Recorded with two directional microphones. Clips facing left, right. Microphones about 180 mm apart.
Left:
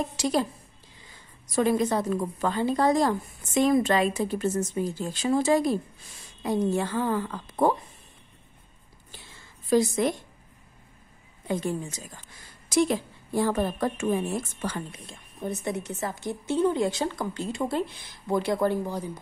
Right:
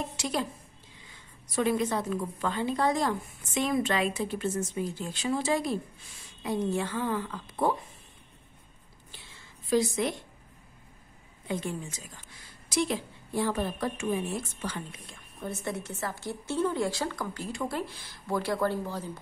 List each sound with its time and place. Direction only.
0.2 s a woman's voice: 35° left (ahead or behind)
1.5 s a woman's voice: 40° left (ahead or behind)
9.7 s a woman's voice: 45° left (ahead or behind)
11.4 s a woman's voice: 40° left (ahead or behind)
15.4 s a woman's voice: 20° left (ahead or behind)